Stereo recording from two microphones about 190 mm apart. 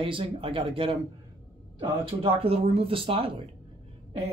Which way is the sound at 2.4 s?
30° right (ahead or behind).